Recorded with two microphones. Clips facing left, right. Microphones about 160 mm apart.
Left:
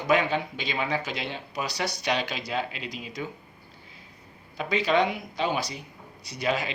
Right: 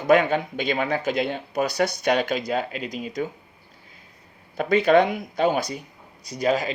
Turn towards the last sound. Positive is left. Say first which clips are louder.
# right 5 dB
turn(degrees=-40)  # may be behind; listen again after turning